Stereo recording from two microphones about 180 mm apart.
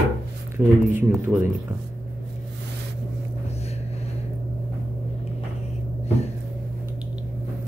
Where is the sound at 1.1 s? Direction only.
5° right (ahead or behind).